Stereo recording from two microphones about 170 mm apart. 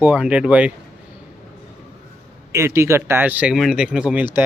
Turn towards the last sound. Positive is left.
turn(degrees=-10)  # may be behind; listen again after turning